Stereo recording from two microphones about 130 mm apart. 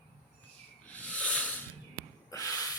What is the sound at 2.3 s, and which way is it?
Snort, 25° left (ahead or behind).